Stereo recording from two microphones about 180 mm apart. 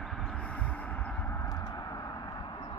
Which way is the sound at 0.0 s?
Centre (ahead or behind).